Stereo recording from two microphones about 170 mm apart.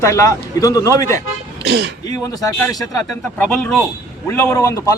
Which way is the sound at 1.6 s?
80° right.